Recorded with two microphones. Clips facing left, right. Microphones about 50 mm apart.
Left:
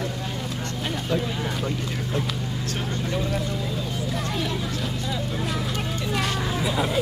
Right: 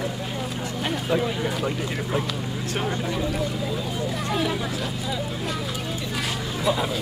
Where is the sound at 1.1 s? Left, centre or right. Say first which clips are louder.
Right 3 dB; centre.